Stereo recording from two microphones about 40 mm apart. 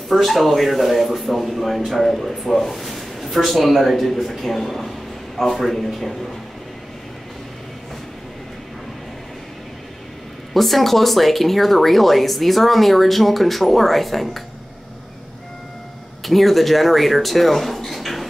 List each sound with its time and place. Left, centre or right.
0.1 s speech: centre
10.5 s speech: centre
16.3 s speech: centre